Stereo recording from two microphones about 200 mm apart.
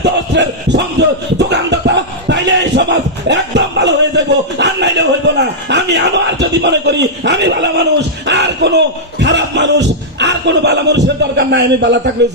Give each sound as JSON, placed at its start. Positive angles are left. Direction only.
{"t": 0.0, "sound": "music", "side_deg": -60}
{"t": 1.5, "sound": "battle cry", "side_deg": -60}
{"t": 8.3, "sound": "speech", "side_deg": -60}